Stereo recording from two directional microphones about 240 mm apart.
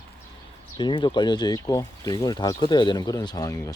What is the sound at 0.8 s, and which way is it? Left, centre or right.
Speech, centre.